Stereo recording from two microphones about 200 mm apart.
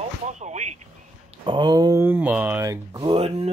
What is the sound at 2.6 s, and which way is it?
Speech, 20° right (ahead or behind).